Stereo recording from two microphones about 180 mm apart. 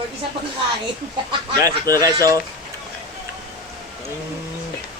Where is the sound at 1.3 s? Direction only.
20° right (ahead or behind).